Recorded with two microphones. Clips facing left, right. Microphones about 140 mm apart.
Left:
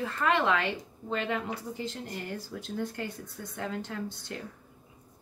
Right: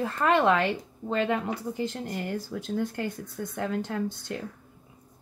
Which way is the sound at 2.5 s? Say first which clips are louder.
Right 5 dB; 70° right (ahead or behind).